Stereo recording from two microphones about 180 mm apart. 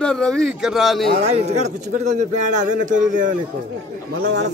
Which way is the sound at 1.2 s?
35° right (ahead or behind).